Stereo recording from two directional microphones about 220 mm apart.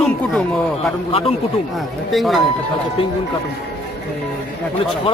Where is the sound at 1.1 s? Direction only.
25° left (ahead or behind).